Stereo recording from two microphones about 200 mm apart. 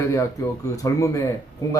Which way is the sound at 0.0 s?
15° left (ahead or behind).